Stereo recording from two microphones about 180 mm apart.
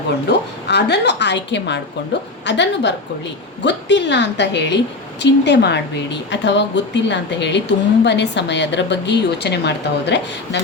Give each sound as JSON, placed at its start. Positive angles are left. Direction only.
{"t": 0.3, "sound": "a woman's voice", "side_deg": 70}